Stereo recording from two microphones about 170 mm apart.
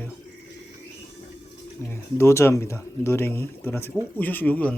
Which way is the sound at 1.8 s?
15° left (ahead or behind).